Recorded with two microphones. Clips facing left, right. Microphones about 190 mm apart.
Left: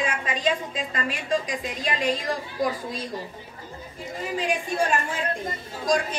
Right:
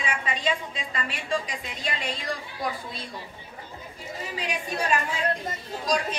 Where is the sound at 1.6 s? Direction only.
45° left (ahead or behind).